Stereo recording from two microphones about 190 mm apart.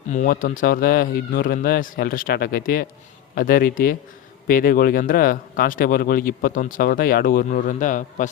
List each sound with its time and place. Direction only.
0.1 s speech: 45° left (ahead or behind)